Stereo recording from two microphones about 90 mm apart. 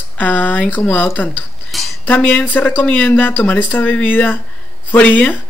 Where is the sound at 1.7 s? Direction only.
Centre (ahead or behind).